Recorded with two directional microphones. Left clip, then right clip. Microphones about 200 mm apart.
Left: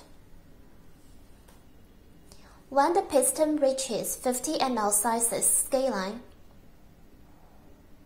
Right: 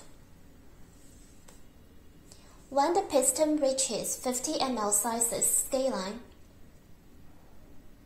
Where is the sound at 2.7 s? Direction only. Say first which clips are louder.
Left 3 dB; 15° left (ahead or behind).